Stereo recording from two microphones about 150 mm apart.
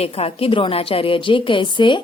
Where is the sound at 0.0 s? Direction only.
40° left (ahead or behind).